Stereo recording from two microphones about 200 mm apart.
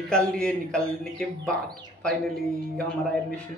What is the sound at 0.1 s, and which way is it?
Speech, 5° left (ahead or behind).